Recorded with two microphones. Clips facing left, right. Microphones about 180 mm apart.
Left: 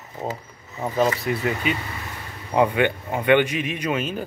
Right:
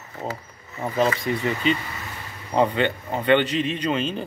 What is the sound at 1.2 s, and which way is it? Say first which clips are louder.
A man's voice: right 1 dB; 5° left (ahead or behind).